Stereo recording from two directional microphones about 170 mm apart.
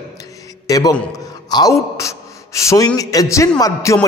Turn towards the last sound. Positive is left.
turn(degrees=20)  # may be behind; listen again after turning